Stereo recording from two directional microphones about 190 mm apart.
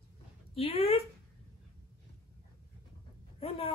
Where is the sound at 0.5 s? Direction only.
30° left (ahead or behind).